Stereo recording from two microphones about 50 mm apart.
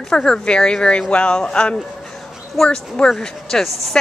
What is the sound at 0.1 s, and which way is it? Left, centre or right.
Speech, centre.